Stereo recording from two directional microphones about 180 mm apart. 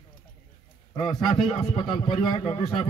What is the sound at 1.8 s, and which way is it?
Speech, 35° left (ahead or behind).